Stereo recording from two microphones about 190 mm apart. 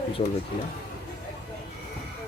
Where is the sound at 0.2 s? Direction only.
30° left (ahead or behind).